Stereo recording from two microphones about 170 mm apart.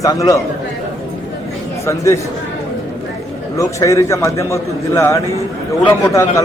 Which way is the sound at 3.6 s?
20° left (ahead or behind).